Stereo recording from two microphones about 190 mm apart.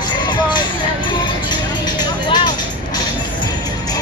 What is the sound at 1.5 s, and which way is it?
Vehicle, 25° left (ahead or behind).